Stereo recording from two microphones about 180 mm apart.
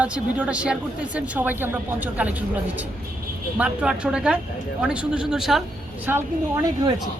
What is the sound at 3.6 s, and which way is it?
Speech, 5° right (ahead or behind).